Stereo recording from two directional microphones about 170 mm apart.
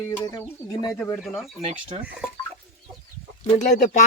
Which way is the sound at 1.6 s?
35° right (ahead or behind).